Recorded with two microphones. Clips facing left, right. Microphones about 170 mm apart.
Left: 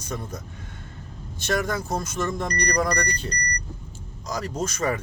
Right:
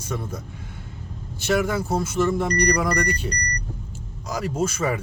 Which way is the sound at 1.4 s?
10° right (ahead or behind).